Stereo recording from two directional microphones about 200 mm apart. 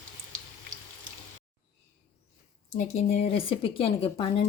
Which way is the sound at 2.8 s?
35° left (ahead or behind).